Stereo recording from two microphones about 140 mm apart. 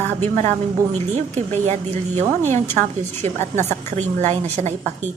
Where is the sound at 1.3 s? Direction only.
50° right (ahead or behind).